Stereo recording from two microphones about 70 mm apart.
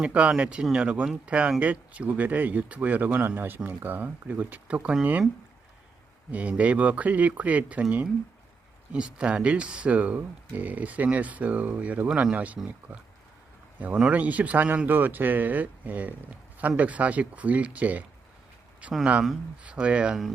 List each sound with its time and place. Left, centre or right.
0.0 s speech: centre
6.3 s speech: right
13.7 s speech: right